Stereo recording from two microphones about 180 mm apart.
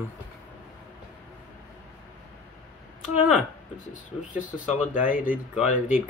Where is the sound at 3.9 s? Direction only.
45° left (ahead or behind).